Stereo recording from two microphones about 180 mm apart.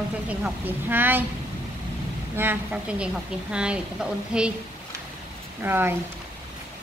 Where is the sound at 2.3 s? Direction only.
10° right (ahead or behind).